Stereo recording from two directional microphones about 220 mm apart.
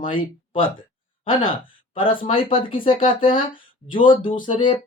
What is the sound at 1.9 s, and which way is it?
Speech, 25° left (ahead or behind).